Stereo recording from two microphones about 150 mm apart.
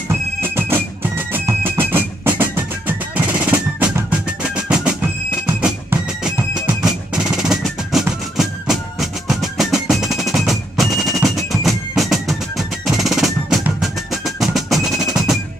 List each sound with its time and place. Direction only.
0.1 s music: 15° right (ahead or behind)
6.2 s music: 5° right (ahead or behind)